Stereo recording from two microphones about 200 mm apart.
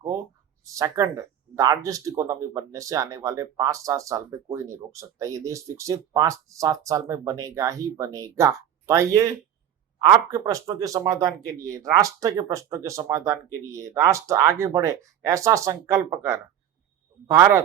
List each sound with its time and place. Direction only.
0.6 s speech: 15° right (ahead or behind)